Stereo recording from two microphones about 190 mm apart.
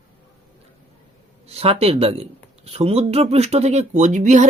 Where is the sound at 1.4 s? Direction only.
30° right (ahead or behind).